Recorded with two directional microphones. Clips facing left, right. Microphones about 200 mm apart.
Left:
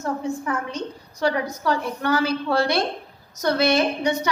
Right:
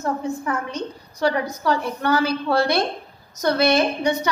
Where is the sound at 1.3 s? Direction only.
40° right (ahead or behind).